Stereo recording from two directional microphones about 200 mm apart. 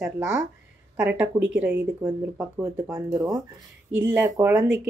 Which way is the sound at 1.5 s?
5° right (ahead or behind).